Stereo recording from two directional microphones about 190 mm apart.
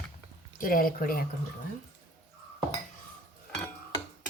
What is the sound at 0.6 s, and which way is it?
Speech, 50° left (ahead or behind).